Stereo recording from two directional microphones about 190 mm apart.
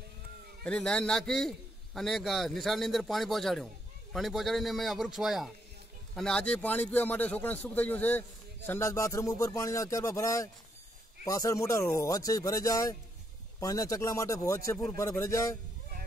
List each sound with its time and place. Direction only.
0.7 s speech: 5° left (ahead or behind)